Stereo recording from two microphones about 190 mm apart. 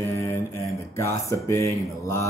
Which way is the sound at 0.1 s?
15° left (ahead or behind).